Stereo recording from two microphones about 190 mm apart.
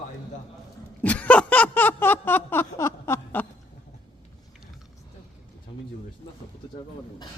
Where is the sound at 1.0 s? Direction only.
10° left (ahead or behind).